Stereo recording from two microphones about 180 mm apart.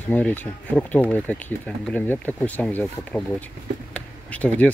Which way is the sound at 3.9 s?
10° left (ahead or behind).